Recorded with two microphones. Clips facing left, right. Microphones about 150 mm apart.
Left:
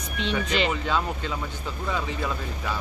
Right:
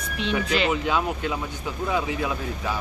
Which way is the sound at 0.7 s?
15° right (ahead or behind).